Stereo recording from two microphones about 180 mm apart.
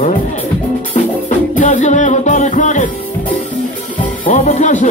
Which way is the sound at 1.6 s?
45° left (ahead or behind).